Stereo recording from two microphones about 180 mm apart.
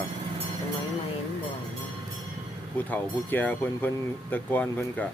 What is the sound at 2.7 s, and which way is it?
Speech, 10° left (ahead or behind).